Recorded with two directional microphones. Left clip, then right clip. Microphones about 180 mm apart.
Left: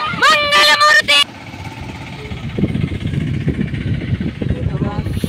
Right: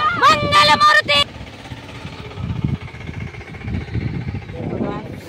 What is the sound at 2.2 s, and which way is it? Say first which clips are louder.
Vehicle: left 8 dB; 50° right (ahead or behind).